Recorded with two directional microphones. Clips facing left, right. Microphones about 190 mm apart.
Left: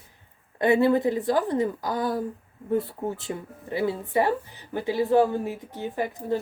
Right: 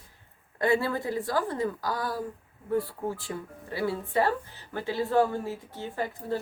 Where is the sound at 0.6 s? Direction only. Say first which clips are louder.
Left 6 dB; 20° left (ahead or behind).